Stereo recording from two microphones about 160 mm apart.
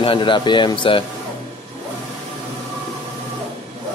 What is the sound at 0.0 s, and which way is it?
Speech, 30° left (ahead or behind).